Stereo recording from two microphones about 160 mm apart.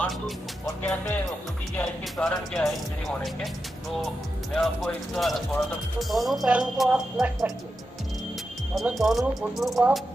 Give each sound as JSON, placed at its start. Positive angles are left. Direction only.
{"t": 1.8, "sound": "speech", "side_deg": 5}
{"t": 4.6, "sound": "speech", "side_deg": 0}
{"t": 8.7, "sound": "speech", "side_deg": 0}